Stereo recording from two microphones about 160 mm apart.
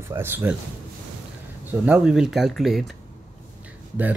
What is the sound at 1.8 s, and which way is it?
Speech, 5° right (ahead or behind).